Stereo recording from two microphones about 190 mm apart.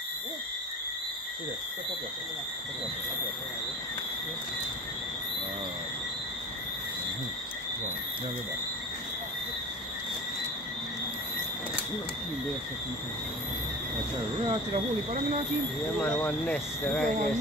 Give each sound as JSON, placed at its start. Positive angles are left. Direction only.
{"t": 16.0, "sound": "speech", "side_deg": 5}